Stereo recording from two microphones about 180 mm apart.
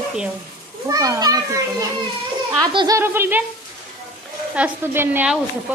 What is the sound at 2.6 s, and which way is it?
Speech, 20° right (ahead or behind).